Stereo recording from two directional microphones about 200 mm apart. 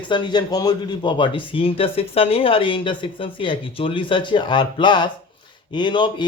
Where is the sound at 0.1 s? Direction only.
20° left (ahead or behind).